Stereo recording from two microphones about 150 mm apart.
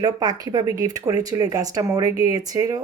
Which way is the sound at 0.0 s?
25° right (ahead or behind).